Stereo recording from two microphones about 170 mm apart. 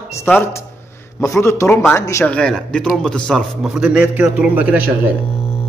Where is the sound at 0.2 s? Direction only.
15° left (ahead or behind).